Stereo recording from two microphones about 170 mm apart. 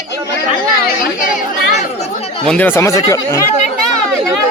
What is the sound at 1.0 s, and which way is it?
Chatter, 55° left (ahead or behind).